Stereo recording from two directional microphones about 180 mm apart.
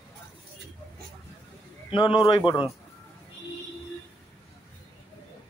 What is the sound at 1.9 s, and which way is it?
Speech, 30° left (ahead or behind).